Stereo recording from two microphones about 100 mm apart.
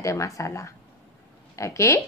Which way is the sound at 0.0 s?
30° left (ahead or behind).